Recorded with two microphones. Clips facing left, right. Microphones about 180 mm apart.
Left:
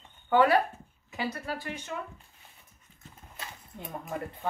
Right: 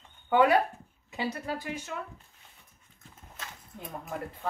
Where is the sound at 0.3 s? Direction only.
15° right (ahead or behind).